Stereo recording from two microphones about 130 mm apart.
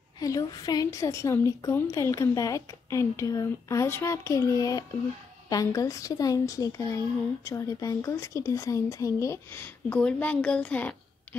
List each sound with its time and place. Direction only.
0.2 s a woman's voice: 30° left (ahead or behind); by 11.0 s 10° left (ahead or behind)